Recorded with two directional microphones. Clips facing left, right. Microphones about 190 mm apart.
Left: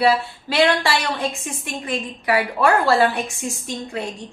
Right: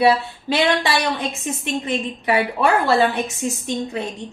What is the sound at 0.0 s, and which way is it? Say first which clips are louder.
A woman's voice: right 2 dB; 20° right (ahead or behind).